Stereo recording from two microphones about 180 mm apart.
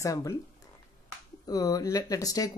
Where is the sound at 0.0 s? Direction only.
15° left (ahead or behind).